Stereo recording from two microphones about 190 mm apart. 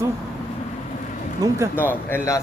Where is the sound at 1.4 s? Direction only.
20° right (ahead or behind).